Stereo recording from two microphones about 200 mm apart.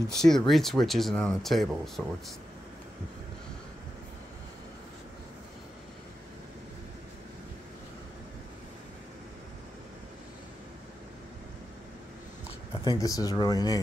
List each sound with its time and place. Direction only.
0.1 s speech: centre (ahead or behind)
12.8 s speech: 20° left (ahead or behind)